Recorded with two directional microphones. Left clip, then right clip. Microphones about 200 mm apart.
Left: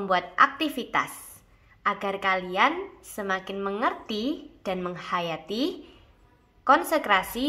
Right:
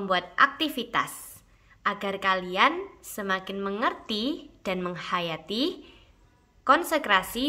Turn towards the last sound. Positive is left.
turn(degrees=-35)  # may be behind; listen again after turning